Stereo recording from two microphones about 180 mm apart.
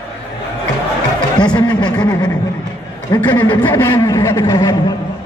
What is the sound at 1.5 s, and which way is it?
Speech, 25° left (ahead or behind).